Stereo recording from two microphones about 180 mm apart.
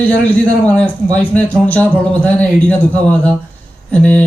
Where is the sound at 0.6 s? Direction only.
5° left (ahead or behind).